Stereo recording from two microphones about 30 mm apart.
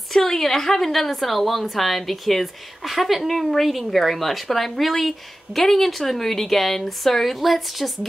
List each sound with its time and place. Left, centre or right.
0.1 s a woman's voice: centre